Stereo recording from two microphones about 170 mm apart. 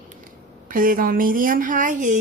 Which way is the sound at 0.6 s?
55° right (ahead or behind).